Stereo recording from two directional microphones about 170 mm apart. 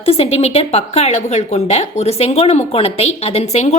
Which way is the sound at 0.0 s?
35° left (ahead or behind).